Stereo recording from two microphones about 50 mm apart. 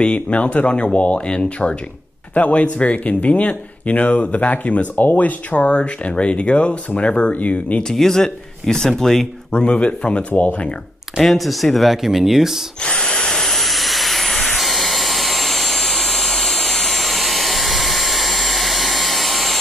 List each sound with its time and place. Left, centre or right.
0.0 s speech: left
7.9 s speech: centre
9.5 s speech: left
11.1 s speech: centre
12.8 s a sound: centre